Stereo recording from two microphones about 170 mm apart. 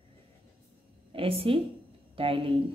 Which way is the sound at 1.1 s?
35° right (ahead or behind).